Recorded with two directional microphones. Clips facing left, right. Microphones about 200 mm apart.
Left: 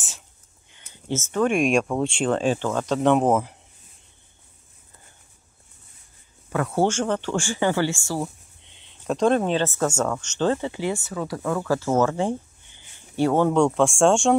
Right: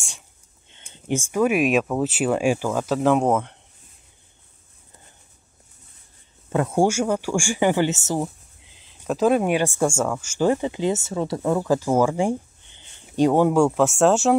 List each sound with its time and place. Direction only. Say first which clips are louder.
0.7 s speech: right 3 dB; 25° right (ahead or behind); by 3.5 s 5° left (ahead or behind)
6.5 s speech: right 2 dB; 20° right (ahead or behind)
8.5 s speech: right 1 dB; centre (ahead or behind)